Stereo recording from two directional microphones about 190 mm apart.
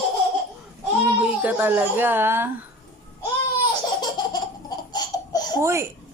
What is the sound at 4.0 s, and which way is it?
Laughter, 20° left (ahead or behind).